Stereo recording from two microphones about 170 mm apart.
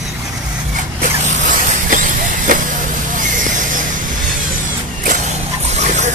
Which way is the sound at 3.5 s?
50° right (ahead or behind).